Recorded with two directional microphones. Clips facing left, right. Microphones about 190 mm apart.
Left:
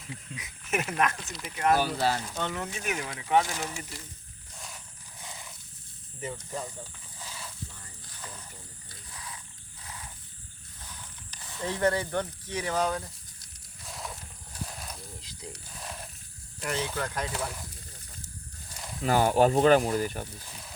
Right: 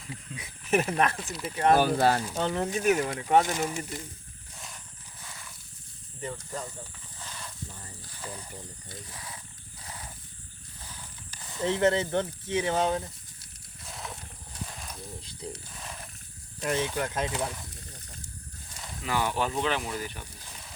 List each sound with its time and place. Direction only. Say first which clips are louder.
0.3 s speech: right 6 dB; 30° right (ahead or behind)
1.2 s speech: right 5 dB; centre (ahead or behind)
1.5 s speech: right 3 dB; 30° right (ahead or behind)
1.7 s speech: right 4 dB; 50° right (ahead or behind)
2.3 s speech: right 5 dB; 35° right (ahead or behind)
3.4 s speech: right 5 dB; 20° right (ahead or behind)
5.2 s wild animals: left 3 dB; 20° left (ahead or behind)
6.1 s speech: even; 10° left (ahead or behind)
7.3 s a sound: even; 5° left (ahead or behind)
11.6 s speech: right 3 dB; 25° right (ahead or behind)
13.8 s wild animals: left 1 dB; centre (ahead or behind)
15.2 s mechanisms: right 3 dB; 30° right (ahead or behind)
16.6 s speech: right 3 dB; 20° right (ahead or behind)
19.0 s speech: left 7 dB; 40° left (ahead or behind)